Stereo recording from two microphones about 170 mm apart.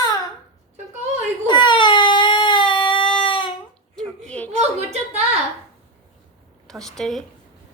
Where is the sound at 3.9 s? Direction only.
5° left (ahead or behind).